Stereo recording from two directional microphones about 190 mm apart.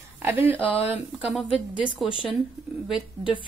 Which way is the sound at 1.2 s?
5° right (ahead or behind).